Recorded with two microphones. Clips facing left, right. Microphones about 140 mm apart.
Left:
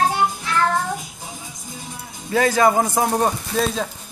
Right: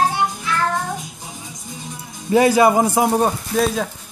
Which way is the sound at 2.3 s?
15° right (ahead or behind).